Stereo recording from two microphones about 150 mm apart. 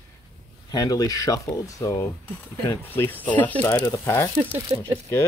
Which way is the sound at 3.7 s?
25° left (ahead or behind).